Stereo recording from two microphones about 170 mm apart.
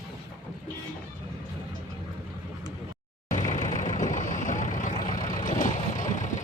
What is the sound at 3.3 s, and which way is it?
Vehicle, 45° left (ahead or behind).